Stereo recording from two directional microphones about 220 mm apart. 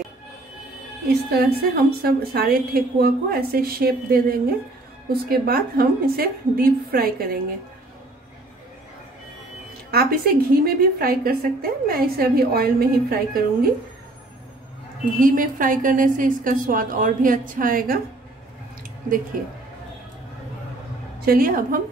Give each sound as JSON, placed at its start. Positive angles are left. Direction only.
{"t": 1.0, "sound": "a woman's voice", "side_deg": -45}
{"t": 9.8, "sound": "a woman's voice", "side_deg": -45}
{"t": 15.1, "sound": "a woman's voice", "side_deg": -40}
{"t": 19.4, "sound": "a woman's voice", "side_deg": -40}
{"t": 21.3, "sound": "a woman's voice", "side_deg": -40}